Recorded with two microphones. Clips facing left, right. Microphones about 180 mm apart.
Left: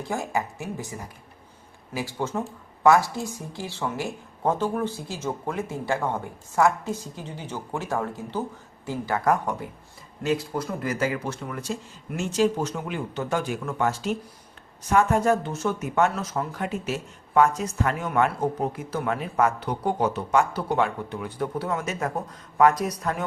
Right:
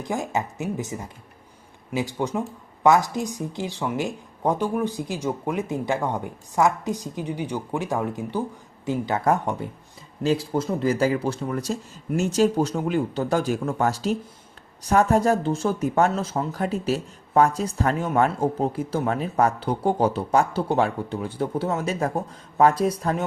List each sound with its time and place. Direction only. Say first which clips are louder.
0.0 s speech: right 1 dB; 15° right (ahead or behind)